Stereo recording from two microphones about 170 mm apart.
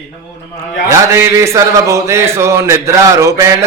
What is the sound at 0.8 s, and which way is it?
A man's voice, 15° right (ahead or behind).